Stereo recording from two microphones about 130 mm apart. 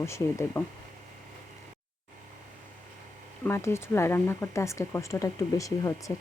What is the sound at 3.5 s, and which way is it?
Speech, 20° left (ahead or behind).